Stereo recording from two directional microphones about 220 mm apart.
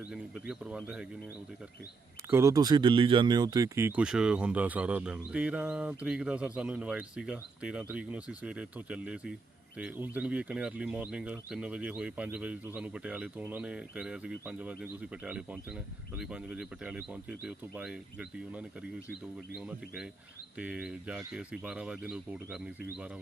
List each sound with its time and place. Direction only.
0.1 s speech: 5° right (ahead or behind)
2.3 s speech: 15° right (ahead or behind)